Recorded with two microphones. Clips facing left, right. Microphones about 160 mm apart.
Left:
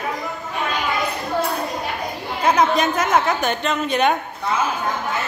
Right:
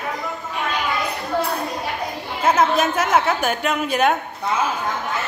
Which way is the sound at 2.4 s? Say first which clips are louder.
Even; 5° right (ahead or behind).